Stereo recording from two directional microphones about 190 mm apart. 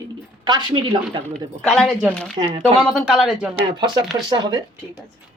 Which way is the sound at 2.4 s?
25° right (ahead or behind).